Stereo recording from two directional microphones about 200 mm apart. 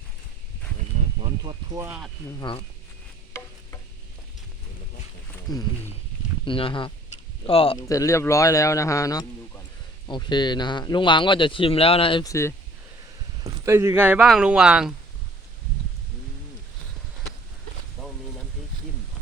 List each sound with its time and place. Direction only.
0.9 s speech: 25° right (ahead or behind)
2.5 s speech: 25° left (ahead or behind)
5.5 s speech: 20° left (ahead or behind)
7.9 s a man's voice: 15° left (ahead or behind)
13.4 s speech: 15° right (ahead or behind)